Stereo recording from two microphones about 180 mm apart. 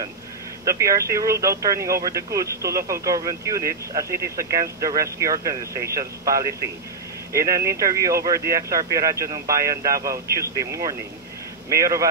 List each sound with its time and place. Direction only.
0.7 s speech: 15° right (ahead or behind)